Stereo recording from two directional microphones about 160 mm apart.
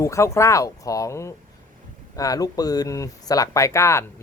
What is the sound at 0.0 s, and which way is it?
Speech, 20° left (ahead or behind).